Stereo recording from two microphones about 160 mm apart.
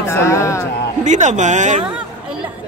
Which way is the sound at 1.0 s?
50° right (ahead or behind).